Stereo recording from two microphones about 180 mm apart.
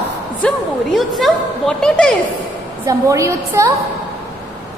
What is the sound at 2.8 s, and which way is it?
Speech, 15° right (ahead or behind).